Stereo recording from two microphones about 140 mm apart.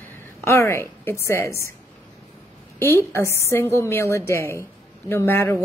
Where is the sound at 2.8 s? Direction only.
20° left (ahead or behind).